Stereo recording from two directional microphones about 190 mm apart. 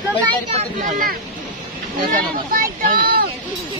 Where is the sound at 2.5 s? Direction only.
50° right (ahead or behind).